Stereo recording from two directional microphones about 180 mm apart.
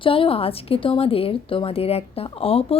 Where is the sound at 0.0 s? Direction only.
30° left (ahead or behind).